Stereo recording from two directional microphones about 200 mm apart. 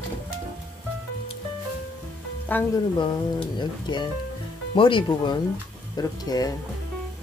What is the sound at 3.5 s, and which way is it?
Speech, 20° left (ahead or behind).